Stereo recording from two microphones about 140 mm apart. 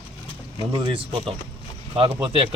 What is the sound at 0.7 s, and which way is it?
Speech, 35° right (ahead or behind).